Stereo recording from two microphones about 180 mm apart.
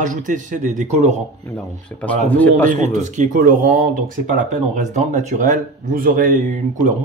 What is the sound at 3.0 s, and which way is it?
Speech, 45° right (ahead or behind).